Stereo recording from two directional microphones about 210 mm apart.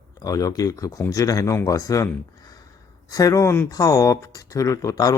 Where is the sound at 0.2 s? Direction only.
15° left (ahead or behind).